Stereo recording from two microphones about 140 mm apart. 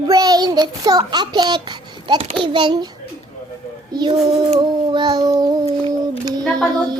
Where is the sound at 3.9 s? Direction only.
30° right (ahead or behind).